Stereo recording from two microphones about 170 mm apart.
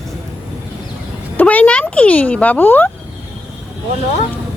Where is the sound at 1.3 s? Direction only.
10° left (ahead or behind).